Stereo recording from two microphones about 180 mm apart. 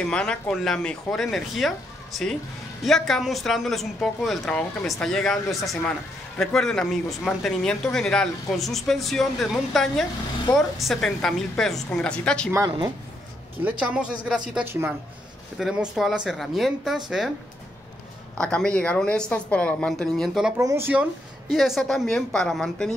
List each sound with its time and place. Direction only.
0.1 s speech: 5° left (ahead or behind)
2.8 s speech: centre (ahead or behind)
12.5 s speech: 20° right (ahead or behind)
13.7 s speech: 5° right (ahead or behind)
15.5 s speech: centre (ahead or behind)
18.4 s speech: 5° left (ahead or behind)
20.5 s speech: 15° right (ahead or behind); by 22.9 s 5° left (ahead or behind)